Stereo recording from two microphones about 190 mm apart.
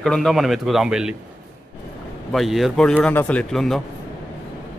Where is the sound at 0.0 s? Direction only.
Centre (ahead or behind).